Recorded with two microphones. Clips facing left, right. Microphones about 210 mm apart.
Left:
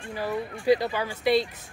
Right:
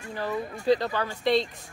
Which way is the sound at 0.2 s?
10° left (ahead or behind).